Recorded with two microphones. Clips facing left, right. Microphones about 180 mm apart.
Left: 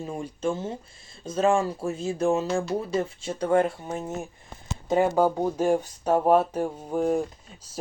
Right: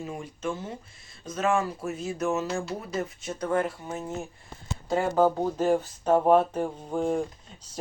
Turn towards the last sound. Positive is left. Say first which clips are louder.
# left 3 dB
turn(degrees=10)  # may be behind; listen again after turning